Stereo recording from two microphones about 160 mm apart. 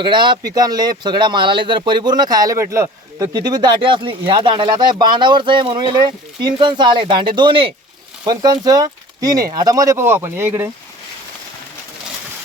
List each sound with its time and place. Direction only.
0.0 s speech: 30° right (ahead or behind)